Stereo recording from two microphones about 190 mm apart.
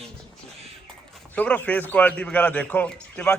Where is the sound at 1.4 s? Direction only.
10° left (ahead or behind).